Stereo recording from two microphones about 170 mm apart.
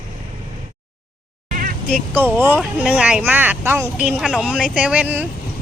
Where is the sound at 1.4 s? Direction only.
55° right (ahead or behind).